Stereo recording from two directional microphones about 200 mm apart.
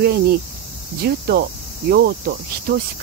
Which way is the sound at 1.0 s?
50° right (ahead or behind).